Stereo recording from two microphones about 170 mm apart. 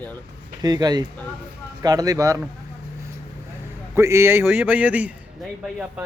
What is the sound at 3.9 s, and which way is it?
A man's voice, 15° right (ahead or behind).